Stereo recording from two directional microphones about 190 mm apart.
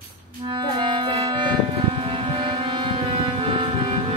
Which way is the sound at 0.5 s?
25° right (ahead or behind).